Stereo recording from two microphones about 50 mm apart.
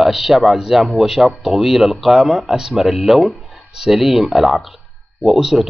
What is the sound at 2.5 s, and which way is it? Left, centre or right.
Speech, centre.